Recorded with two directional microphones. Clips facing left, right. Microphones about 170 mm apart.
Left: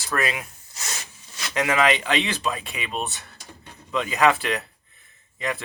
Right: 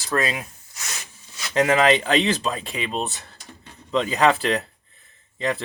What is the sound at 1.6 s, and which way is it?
Speech, 35° right (ahead or behind).